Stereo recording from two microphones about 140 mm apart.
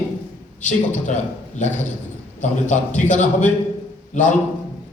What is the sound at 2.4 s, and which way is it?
Speech, 60° left (ahead or behind).